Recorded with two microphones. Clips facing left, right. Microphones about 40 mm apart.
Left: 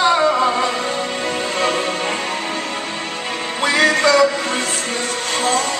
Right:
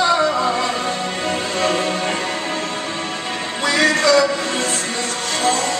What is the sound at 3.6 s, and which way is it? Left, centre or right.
Music, left.